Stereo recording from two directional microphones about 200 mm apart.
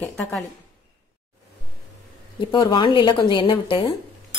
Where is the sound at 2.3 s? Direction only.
25° left (ahead or behind).